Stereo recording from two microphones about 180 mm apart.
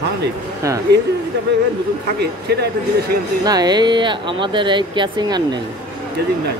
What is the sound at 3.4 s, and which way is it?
Speech, 20° right (ahead or behind).